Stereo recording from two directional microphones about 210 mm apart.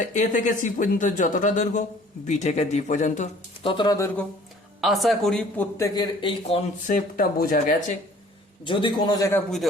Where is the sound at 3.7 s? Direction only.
20° left (ahead or behind).